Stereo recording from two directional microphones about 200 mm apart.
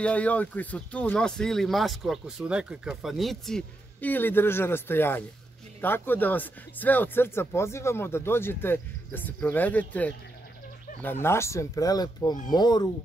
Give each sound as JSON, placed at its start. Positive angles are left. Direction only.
{"t": 0.0, "sound": "speech", "side_deg": 5}